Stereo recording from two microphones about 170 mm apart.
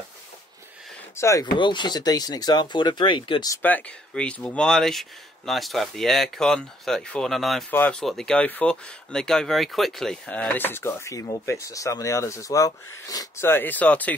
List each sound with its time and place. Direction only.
1.1 s speech: 20° left (ahead or behind)
3.6 s speech: 10° left (ahead or behind)